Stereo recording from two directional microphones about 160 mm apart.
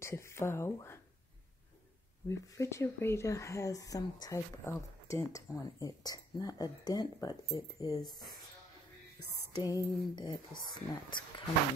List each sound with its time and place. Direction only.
0.0 s speech: 15° left (ahead or behind)
2.2 s speech: 20° left (ahead or behind)
9.6 s speech: 25° left (ahead or behind)